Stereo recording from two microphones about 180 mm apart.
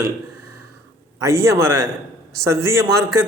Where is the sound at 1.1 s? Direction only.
15° right (ahead or behind).